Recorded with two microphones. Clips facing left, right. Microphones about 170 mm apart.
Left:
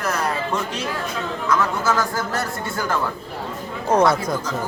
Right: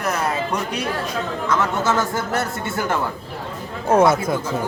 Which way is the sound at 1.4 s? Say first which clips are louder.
Even; 25° right (ahead or behind).